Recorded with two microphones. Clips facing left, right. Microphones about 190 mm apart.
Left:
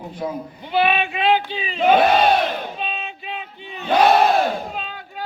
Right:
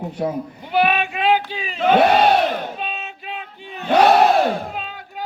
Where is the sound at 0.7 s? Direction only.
5° right (ahead or behind).